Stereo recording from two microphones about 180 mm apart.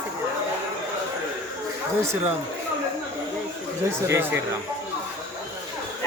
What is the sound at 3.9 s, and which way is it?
Speech, 15° right (ahead or behind).